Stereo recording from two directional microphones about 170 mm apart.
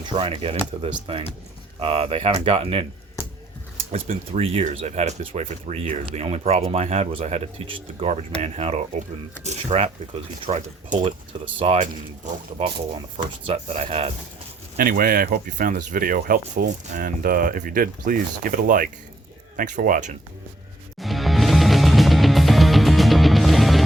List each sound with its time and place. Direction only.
0.0 s speech: 30° right (ahead or behind)
3.9 s speech: 35° right (ahead or behind)
14.8 s speech: 55° right (ahead or behind)
21.0 s music: centre (ahead or behind)